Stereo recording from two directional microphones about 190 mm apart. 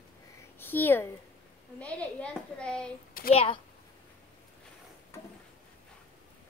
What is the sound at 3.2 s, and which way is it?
Speech, 50° left (ahead or behind).